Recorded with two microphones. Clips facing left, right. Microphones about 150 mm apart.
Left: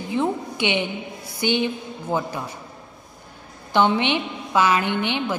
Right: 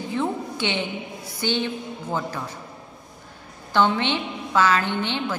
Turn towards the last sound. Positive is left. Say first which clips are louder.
# left 2 dB
turn(degrees=15)  # may be behind; listen again after turning